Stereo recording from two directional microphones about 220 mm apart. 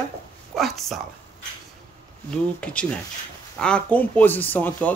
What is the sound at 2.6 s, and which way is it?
Speech, 5° left (ahead or behind).